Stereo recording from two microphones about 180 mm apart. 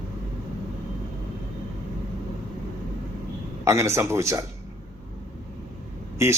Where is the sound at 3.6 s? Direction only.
15° right (ahead or behind).